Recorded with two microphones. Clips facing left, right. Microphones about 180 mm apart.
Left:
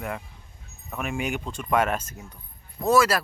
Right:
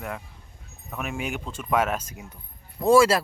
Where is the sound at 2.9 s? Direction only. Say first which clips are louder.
Right 3 dB; 25° right (ahead or behind).